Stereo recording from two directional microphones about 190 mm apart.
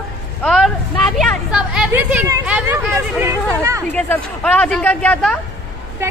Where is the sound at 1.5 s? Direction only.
5° right (ahead or behind).